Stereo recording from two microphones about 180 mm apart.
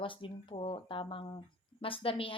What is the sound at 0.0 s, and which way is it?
A woman's voice, 30° left (ahead or behind).